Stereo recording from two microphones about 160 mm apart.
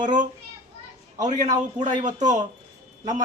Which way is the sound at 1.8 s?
50° right (ahead or behind).